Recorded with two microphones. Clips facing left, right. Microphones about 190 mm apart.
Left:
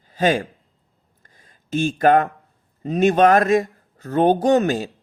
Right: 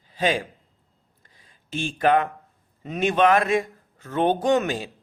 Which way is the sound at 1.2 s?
45° left (ahead or behind).